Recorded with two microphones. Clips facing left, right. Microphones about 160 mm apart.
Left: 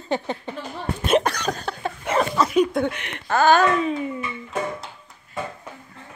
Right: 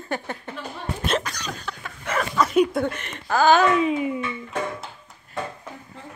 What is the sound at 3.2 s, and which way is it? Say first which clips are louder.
Speech: even; centre (ahead or behind).